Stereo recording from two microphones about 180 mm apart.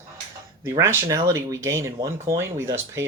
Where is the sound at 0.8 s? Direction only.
15° right (ahead or behind).